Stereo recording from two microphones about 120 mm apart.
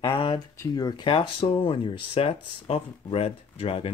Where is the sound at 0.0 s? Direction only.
45° left (ahead or behind).